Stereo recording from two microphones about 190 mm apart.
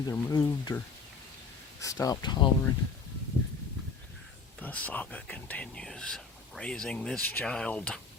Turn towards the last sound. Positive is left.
turn(degrees=5)  # may be behind; listen again after turning